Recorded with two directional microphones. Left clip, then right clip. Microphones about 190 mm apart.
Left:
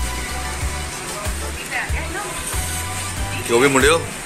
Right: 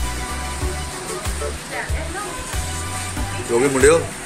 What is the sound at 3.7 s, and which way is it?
Speech, centre (ahead or behind).